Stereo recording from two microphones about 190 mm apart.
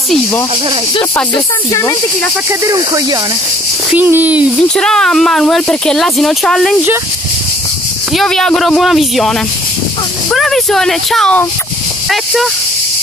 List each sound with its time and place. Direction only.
1.3 s speech: 20° left (ahead or behind)
2.6 s speech: 20° right (ahead or behind)
4.6 s speech: 5° left (ahead or behind)
8.1 s speech: centre (ahead or behind)